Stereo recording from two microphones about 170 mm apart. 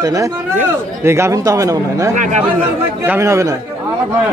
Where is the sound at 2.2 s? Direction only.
45° right (ahead or behind).